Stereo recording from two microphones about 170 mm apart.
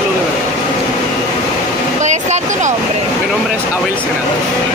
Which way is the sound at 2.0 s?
45° right (ahead or behind).